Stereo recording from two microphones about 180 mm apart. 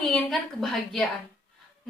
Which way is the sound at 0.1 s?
Centre (ahead or behind).